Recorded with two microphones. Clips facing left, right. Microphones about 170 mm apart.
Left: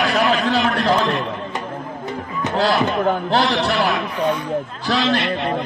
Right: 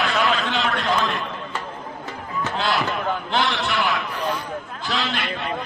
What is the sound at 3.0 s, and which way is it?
A man's voice, 40° left (ahead or behind).